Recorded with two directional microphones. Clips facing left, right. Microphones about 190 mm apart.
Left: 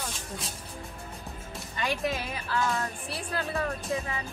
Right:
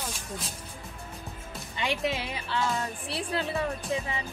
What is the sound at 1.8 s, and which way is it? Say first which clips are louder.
Speech: right 1 dB; 20° right (ahead or behind).